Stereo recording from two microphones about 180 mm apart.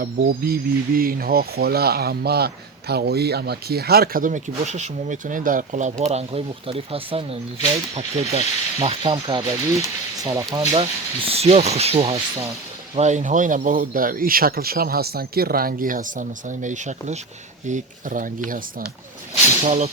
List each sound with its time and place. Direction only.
0.0 s speech: 55° right (ahead or behind); by 10.8 s 20° right (ahead or behind)
11.3 s speech: 35° right (ahead or behind)
19.6 s speech: 35° right (ahead or behind)